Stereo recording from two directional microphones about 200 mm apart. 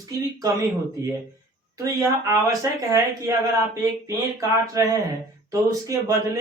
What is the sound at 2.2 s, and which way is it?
A man's voice, 15° right (ahead or behind).